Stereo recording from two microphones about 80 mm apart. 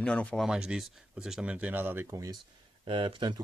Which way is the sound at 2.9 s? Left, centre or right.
Right.